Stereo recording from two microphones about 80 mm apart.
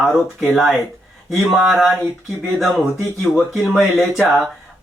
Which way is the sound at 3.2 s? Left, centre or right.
Centre.